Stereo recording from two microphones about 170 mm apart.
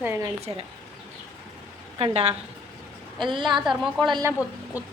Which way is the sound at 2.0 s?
35° right (ahead or behind).